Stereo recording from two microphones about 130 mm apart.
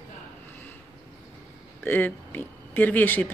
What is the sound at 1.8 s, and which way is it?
Speech, 15° left (ahead or behind).